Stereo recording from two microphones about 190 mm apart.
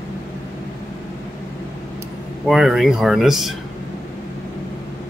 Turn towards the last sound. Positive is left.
turn(degrees=0)  # may be behind; listen again after turning